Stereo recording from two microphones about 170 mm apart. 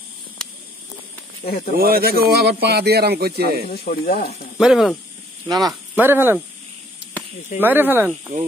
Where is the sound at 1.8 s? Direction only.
65° right (ahead or behind).